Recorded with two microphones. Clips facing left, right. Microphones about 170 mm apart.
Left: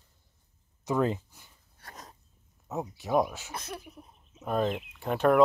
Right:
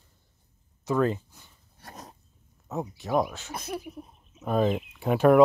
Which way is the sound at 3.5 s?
10° right (ahead or behind).